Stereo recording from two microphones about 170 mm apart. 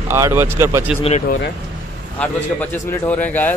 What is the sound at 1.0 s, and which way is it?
Speech, 40° left (ahead or behind).